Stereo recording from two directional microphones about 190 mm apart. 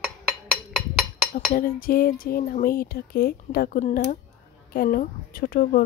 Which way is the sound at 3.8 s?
40° left (ahead or behind).